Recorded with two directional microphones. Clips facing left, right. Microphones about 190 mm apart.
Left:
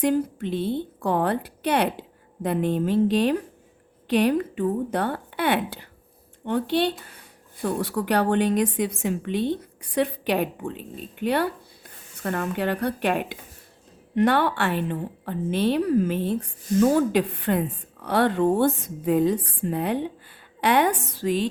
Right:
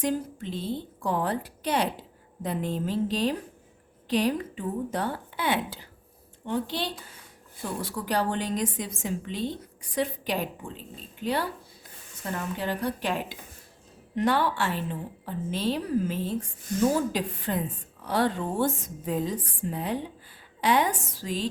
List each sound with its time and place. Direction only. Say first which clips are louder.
0.0 s a woman's voice: left 6 dB; 65° left (ahead or behind)